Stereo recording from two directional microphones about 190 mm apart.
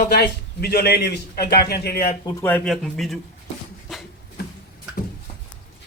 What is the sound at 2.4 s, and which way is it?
Speech, 5° left (ahead or behind).